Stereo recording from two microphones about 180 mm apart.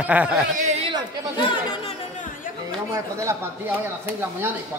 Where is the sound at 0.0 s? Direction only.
10° right (ahead or behind).